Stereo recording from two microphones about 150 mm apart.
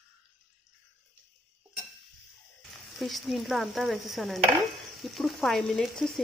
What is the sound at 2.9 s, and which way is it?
Speech, centre (ahead or behind).